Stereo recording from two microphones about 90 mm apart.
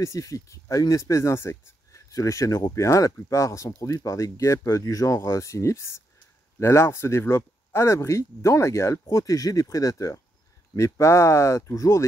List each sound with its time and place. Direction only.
0.0 s speech: 40° left (ahead or behind)